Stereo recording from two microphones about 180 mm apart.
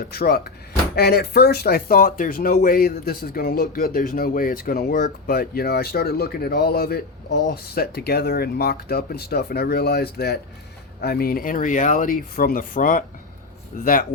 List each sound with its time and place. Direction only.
0.0 s speech: 60° left (ahead or behind)